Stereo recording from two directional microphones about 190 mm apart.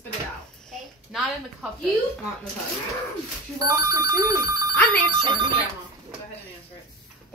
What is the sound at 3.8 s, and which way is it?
Telephone bell ringing, 15° right (ahead or behind).